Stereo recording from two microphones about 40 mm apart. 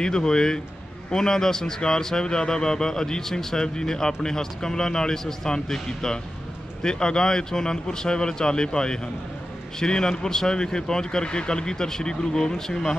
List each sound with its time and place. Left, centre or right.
0.0 s a man's voice: centre